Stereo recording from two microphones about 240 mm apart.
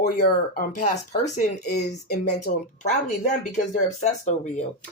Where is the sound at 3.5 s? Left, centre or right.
Left.